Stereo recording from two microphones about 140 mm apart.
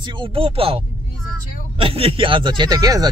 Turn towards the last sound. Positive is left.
turn(degrees=-25)  # may be behind; listen again after turning